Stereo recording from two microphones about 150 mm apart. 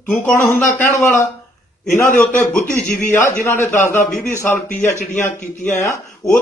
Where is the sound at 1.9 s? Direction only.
10° left (ahead or behind).